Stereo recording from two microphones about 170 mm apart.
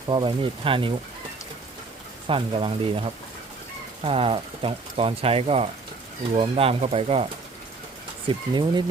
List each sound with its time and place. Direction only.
0.1 s speech: 30° right (ahead or behind)
2.2 s speech: 30° right (ahead or behind)
8.3 s speech: 25° right (ahead or behind)